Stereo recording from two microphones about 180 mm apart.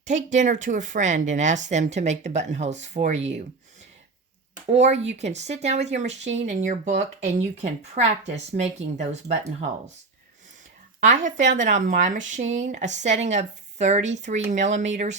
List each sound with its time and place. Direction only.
0.3 s speech: 45° right (ahead or behind)
4.7 s speech: 40° right (ahead or behind)
11.0 s a woman's voice: 45° right (ahead or behind)